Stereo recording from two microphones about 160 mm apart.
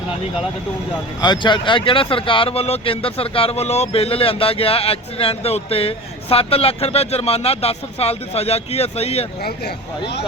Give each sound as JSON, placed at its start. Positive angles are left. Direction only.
{"t": 1.2, "sound": "speech", "side_deg": 30}
{"t": 9.4, "sound": "speech", "side_deg": 90}